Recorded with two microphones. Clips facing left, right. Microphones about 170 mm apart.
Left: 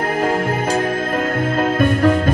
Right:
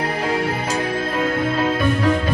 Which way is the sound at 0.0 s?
45° left (ahead or behind).